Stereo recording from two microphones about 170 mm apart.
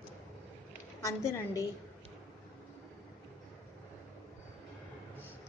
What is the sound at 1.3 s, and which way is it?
Speech, 20° left (ahead or behind).